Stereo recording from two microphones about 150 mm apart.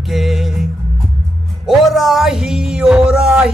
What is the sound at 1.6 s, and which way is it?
Music, centre (ahead or behind).